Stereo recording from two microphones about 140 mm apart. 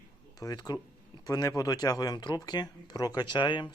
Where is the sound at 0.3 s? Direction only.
25° left (ahead or behind).